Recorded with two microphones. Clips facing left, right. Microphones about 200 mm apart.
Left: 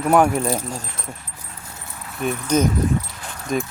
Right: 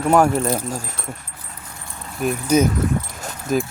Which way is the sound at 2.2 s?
5° right (ahead or behind).